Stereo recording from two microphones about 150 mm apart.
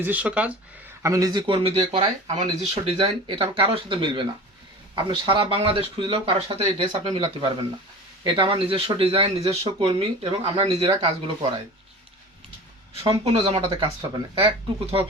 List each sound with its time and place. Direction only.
0.0 s speech: 10° right (ahead or behind)
1.0 s speech: 20° right (ahead or behind)
13.0 s speech: 40° right (ahead or behind)